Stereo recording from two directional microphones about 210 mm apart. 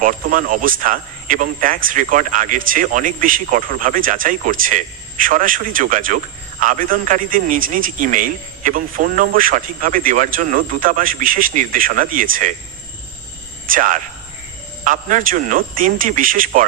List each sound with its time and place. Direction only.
0.0 s speech: 40° right (ahead or behind)
13.7 s speech: 40° right (ahead or behind)